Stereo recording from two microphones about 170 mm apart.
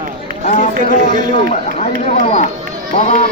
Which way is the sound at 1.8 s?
45° left (ahead or behind).